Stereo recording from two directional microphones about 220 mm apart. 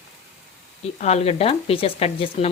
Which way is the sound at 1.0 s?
30° left (ahead or behind).